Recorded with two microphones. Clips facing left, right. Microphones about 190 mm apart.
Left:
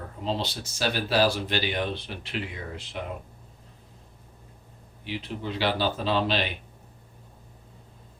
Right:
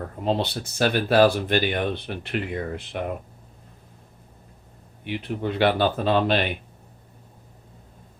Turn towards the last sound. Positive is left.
turn(degrees=-55)  # may be behind; listen again after turning